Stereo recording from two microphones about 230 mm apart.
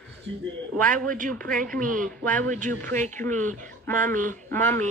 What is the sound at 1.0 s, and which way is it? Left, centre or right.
Speech, right.